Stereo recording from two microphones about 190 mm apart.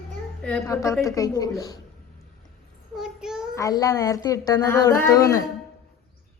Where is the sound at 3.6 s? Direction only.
20° left (ahead or behind).